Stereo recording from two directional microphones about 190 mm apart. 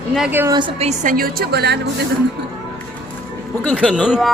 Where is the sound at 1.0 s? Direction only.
50° right (ahead or behind).